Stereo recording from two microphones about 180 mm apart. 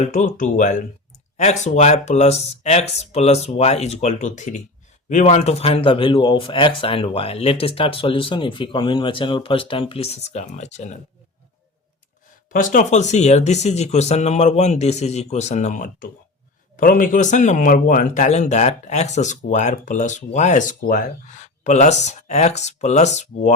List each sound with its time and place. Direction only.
0.0 s speech: 45° left (ahead or behind)
12.5 s speech: 45° left (ahead or behind)